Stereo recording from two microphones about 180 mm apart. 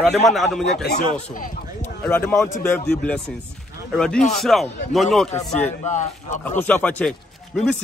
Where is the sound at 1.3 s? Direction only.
50° left (ahead or behind).